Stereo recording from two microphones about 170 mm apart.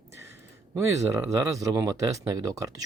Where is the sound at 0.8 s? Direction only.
20° right (ahead or behind).